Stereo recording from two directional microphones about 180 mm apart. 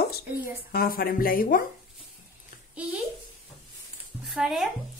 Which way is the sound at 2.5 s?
50° left (ahead or behind).